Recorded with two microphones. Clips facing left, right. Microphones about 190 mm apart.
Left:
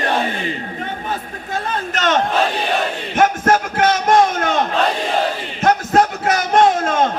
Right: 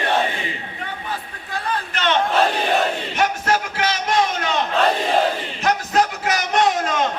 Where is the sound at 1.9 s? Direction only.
45° left (ahead or behind).